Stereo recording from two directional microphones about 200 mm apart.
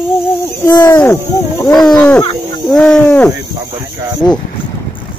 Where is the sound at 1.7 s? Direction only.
5° left (ahead or behind).